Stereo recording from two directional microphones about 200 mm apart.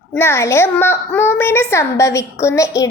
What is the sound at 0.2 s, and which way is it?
A child's voice, 15° left (ahead or behind).